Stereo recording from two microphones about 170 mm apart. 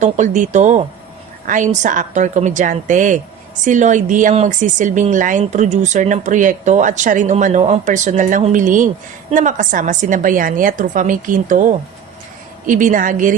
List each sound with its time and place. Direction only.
0.0 s speech: 45° right (ahead or behind)